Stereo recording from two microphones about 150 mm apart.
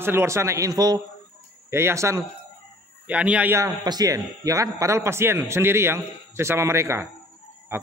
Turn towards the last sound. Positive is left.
turn(degrees=-15)  # may be behind; listen again after turning